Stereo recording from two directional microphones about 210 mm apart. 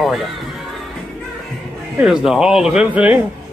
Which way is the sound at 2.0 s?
5° right (ahead or behind).